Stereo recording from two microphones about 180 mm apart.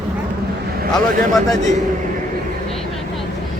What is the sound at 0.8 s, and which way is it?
Speech, 50° right (ahead or behind).